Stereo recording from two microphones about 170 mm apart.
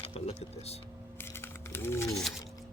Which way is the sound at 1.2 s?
15° left (ahead or behind).